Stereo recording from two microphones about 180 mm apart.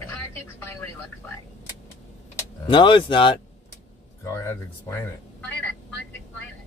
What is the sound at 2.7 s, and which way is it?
Speech, 25° left (ahead or behind).